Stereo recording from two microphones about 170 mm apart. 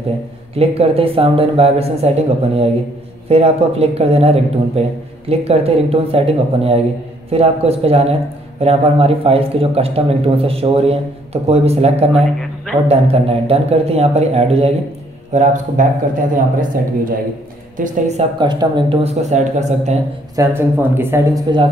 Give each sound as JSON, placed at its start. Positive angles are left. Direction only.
{"t": 0.6, "sound": "a man's voice", "side_deg": -35}
{"t": 17.7, "sound": "speech", "side_deg": -45}
{"t": 18.4, "sound": "a man's voice", "side_deg": -25}
{"t": 20.3, "sound": "speech", "side_deg": -15}
{"t": 21.5, "sound": "speech", "side_deg": -25}